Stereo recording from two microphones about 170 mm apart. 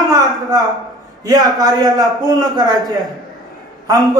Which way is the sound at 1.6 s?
20° right (ahead or behind).